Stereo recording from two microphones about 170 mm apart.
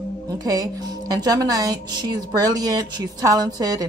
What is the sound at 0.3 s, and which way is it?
A woman's voice, 20° right (ahead or behind).